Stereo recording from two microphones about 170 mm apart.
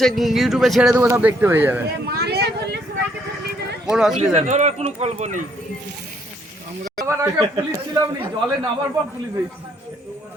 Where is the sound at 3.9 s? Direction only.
5° right (ahead or behind).